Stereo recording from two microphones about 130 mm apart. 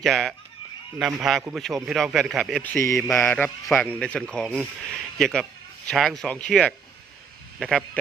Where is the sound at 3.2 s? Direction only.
15° left (ahead or behind).